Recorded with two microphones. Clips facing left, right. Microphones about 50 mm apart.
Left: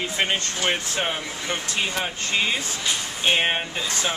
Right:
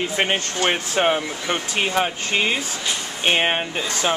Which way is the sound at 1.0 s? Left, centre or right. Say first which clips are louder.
Right 7 dB; right.